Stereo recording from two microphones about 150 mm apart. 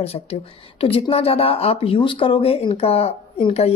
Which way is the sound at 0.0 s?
40° left (ahead or behind).